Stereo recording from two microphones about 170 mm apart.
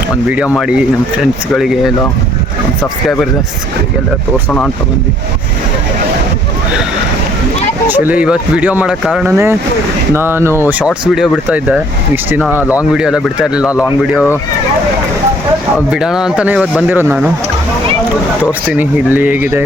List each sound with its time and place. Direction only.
0.5 s speech: centre (ahead or behind)
7.9 s speech: 10° right (ahead or behind)
9.3 s speech: 15° right (ahead or behind)
15.9 s speech: 5° right (ahead or behind)
18.7 s speech: 10° right (ahead or behind)